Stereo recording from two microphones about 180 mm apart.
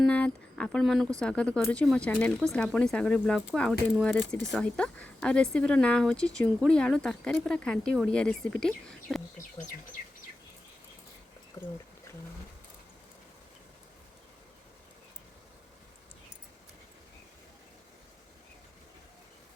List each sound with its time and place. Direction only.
0.0 s a sound: 5° left (ahead or behind)
1.2 s speech: 5° left (ahead or behind)
11.6 s speech: 15° left (ahead or behind)